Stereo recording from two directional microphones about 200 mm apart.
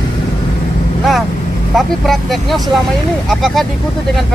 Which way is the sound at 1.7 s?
Centre (ahead or behind).